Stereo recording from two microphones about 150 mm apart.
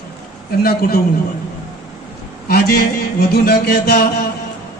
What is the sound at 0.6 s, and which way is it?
Speech, 85° left.